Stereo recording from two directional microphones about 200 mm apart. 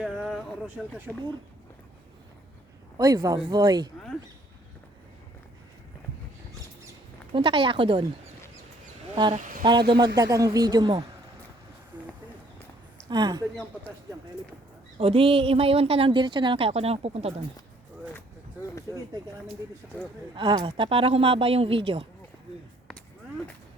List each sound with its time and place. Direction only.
0.0 s a sound: centre (ahead or behind)
0.8 s speech: centre (ahead or behind)
3.0 s speech: 20° right (ahead or behind)
7.3 s speech: 25° right (ahead or behind)
9.3 s speech: 40° right (ahead or behind)
10.2 s speech: 15° right (ahead or behind)
13.1 s speech: 20° right (ahead or behind)
14.9 s speech: 30° right (ahead or behind)
20.3 s speech: 25° right (ahead or behind)